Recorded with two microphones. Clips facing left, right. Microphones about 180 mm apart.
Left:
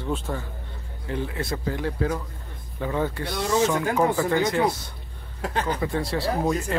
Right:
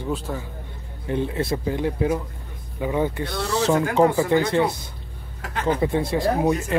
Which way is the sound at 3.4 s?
35° right (ahead or behind).